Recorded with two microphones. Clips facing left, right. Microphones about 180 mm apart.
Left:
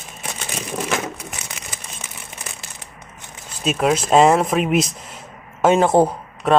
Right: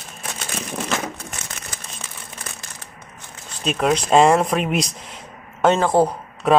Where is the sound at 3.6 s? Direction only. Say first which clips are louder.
Left 1 dB; 5° left (ahead or behind).